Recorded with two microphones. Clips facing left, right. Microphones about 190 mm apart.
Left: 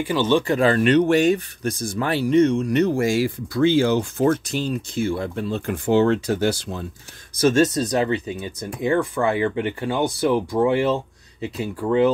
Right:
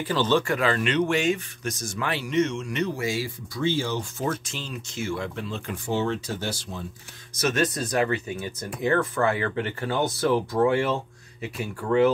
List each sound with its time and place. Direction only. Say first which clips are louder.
0.0 s speech: left 3 dB; 15° left (ahead or behind)
0.6 s speech: left 7 dB; 40° left (ahead or behind)
3.7 s speech: left 9 dB; 65° left (ahead or behind)
4.5 s speech: left 11 dB; 40° left (ahead or behind)
5.9 s speech: left 9 dB; 65° left (ahead or behind)
7.3 s speech: left 7 dB; 25° left (ahead or behind)